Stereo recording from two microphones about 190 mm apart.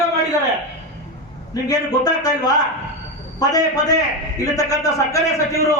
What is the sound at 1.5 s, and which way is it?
A man's voice, 20° left (ahead or behind).